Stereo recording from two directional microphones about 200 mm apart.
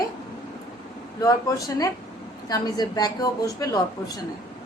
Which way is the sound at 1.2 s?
15° left (ahead or behind).